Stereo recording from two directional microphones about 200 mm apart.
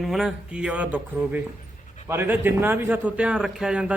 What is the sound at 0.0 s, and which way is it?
A man's voice, centre (ahead or behind).